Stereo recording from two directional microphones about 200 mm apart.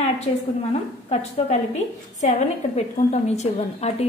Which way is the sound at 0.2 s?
30° left (ahead or behind).